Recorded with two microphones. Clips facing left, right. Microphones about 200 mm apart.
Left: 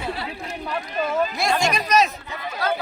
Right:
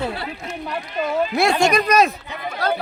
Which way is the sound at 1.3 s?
65° right (ahead or behind).